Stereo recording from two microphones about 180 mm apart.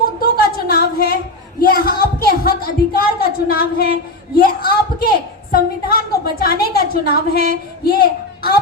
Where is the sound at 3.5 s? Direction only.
55° left (ahead or behind).